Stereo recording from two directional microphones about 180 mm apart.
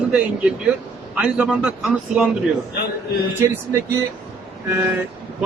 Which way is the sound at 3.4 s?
10° right (ahead or behind).